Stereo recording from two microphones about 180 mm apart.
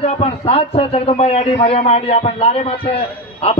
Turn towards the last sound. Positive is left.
turn(degrees=30)  # may be behind; listen again after turning